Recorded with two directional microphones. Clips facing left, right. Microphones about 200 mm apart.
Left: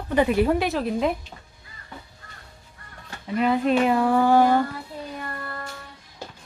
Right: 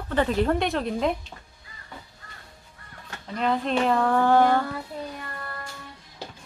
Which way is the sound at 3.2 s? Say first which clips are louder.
Left 4 dB; 5° left (ahead or behind).